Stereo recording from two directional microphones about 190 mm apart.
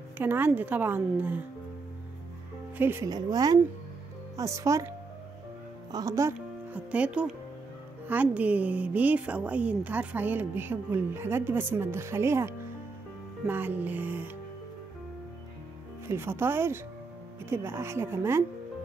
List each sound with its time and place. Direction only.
0.2 s a woman's voice: 10° right (ahead or behind)
2.8 s a woman's voice: 15° right (ahead or behind)
16.1 s a woman's voice: 15° right (ahead or behind)